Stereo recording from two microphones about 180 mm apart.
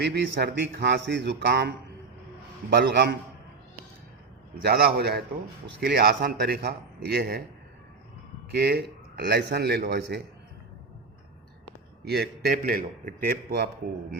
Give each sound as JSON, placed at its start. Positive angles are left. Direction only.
{"t": 0.0, "sound": "a man's voice", "side_deg": -65}
{"t": 4.6, "sound": "a man's voice", "side_deg": -60}
{"t": 8.4, "sound": "a man's voice", "side_deg": -60}
{"t": 12.0, "sound": "a man's voice", "side_deg": -60}